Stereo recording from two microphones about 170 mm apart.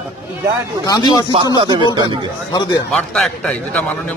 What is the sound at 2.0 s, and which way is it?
Speech, 25° left (ahead or behind).